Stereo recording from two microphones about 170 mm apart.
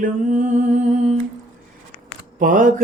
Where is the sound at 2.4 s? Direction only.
50° right (ahead or behind).